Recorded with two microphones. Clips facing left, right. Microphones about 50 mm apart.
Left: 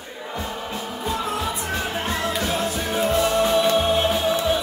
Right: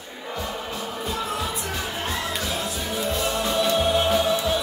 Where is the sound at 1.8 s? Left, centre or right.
Left.